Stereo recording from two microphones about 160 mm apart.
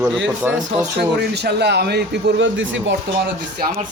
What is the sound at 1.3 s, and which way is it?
A man's voice, 90° right.